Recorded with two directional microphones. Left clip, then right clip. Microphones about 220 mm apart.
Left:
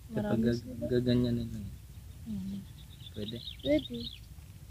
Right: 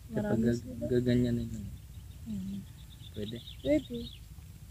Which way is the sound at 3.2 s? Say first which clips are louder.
Left 1 dB; 5° left (ahead or behind).